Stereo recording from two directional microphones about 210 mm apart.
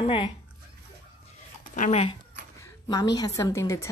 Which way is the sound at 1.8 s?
30° left (ahead or behind).